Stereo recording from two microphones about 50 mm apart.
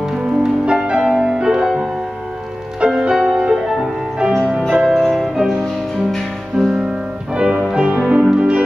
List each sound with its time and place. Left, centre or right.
0.2 s music: centre
3.0 s music: centre
6.6 s music: centre
7.3 s music: centre